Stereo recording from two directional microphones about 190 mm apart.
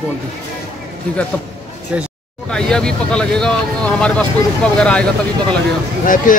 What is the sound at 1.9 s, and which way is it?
Speech, 5° right (ahead or behind).